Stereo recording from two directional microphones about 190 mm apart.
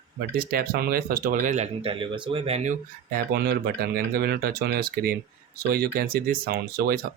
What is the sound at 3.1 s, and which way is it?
Speech, 55° right (ahead or behind).